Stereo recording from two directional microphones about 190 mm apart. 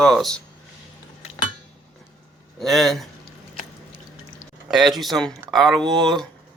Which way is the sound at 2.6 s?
Centre (ahead or behind).